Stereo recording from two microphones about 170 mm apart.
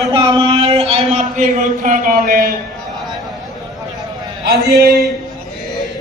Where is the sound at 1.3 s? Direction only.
50° right (ahead or behind).